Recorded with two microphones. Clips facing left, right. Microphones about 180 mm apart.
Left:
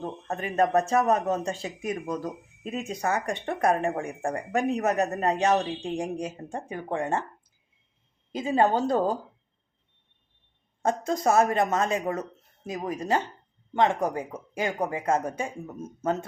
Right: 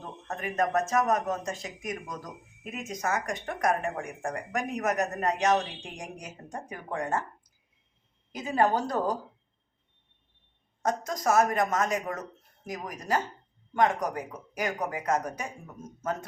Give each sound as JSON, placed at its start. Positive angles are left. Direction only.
{"t": 0.0, "sound": "speech", "side_deg": 30}
{"t": 8.3, "sound": "speech", "side_deg": 25}
{"t": 10.8, "sound": "speech", "side_deg": 30}